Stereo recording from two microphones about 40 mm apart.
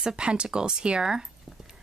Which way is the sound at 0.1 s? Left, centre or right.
Right.